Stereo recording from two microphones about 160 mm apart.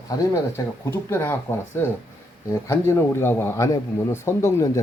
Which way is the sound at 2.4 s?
15° left (ahead or behind).